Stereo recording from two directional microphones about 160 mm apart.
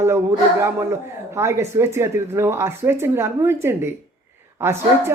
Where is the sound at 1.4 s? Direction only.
15° right (ahead or behind).